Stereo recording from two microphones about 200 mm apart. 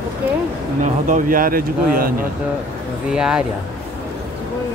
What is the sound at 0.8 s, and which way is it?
Speech, 40° right (ahead or behind).